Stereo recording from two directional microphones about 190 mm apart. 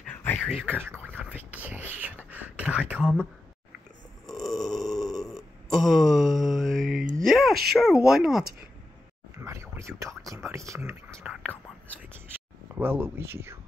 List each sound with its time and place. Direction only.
0.1 s speech: 10° left (ahead or behind)
0.8 s speech: 10° right (ahead or behind)
2.0 s a sound: 10° right (ahead or behind)
4.3 s burping: centre (ahead or behind)
7.0 s a sound: 45° right (ahead or behind)
7.2 s speech: centre (ahead or behind)
9.4 s a sound: 15° right (ahead or behind)
10.2 s speech: 15° right (ahead or behind)
11.3 s whispering: 5° right (ahead or behind)
12.7 s speech: 10° right (ahead or behind)